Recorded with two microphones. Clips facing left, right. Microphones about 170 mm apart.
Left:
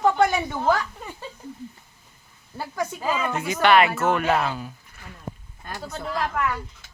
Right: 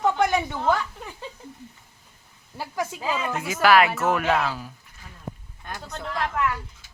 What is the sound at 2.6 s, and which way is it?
Speech, centre (ahead or behind).